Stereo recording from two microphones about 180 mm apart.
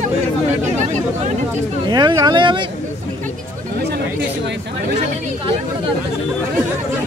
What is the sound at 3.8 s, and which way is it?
Chatter, 70° right (ahead or behind).